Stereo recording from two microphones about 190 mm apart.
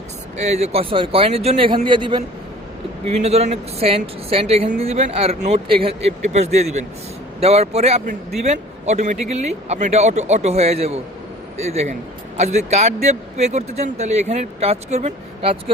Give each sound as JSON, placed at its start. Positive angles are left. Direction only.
{"t": 0.3, "sound": "a woman's voice", "side_deg": -35}
{"t": 12.4, "sound": "a woman's voice", "side_deg": -35}